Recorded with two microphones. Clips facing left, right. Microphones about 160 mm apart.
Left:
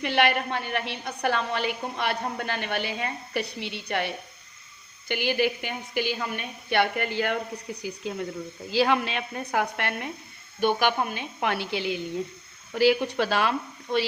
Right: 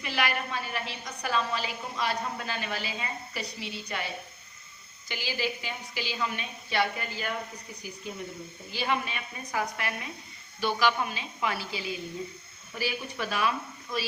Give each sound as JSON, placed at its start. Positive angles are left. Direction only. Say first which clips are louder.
{"t": 0.0, "sound": "a woman's voice", "louder": "left 7 dB", "side_deg": 70}
{"t": 8.7, "sound": "a woman's voice", "louder": "left 8 dB", "side_deg": 90}